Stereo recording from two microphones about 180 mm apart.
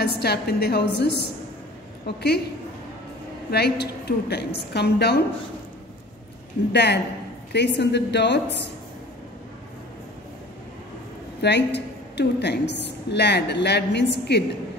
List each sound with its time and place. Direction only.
0.0 s a woman's voice: 65° left (ahead or behind)
2.0 s a woman's voice: 65° left (ahead or behind)
3.5 s a woman's voice: 65° left (ahead or behind)
6.7 s a woman's voice: 70° left (ahead or behind)
11.4 s a woman's voice: 70° left (ahead or behind)